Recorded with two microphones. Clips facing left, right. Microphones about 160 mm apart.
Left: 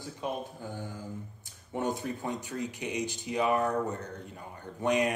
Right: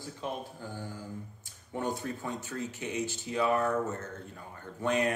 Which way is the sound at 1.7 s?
20° left (ahead or behind).